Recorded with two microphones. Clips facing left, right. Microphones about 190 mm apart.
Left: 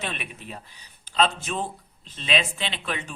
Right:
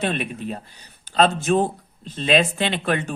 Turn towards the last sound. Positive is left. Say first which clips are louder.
# right 9 dB
turn(degrees=-50)  # may be behind; listen again after turning